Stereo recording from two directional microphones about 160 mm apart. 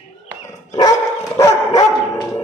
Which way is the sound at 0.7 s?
25° left (ahead or behind).